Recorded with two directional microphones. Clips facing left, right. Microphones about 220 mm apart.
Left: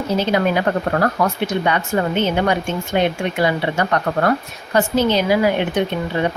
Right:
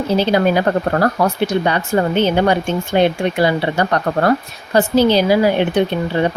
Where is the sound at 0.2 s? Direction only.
35° right (ahead or behind).